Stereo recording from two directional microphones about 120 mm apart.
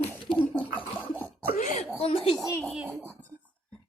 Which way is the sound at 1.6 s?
75° left (ahead or behind).